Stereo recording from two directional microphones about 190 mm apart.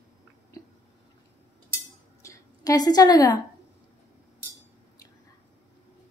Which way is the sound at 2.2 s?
20° left (ahead or behind).